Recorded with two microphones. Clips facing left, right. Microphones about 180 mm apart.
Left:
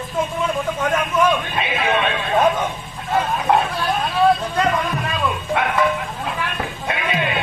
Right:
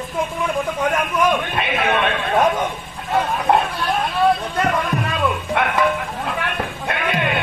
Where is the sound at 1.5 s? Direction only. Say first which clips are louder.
Right 1 dB; 60° right (ahead or behind).